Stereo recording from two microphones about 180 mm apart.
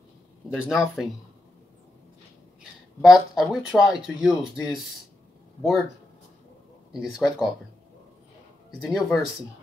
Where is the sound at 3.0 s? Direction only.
Centre (ahead or behind).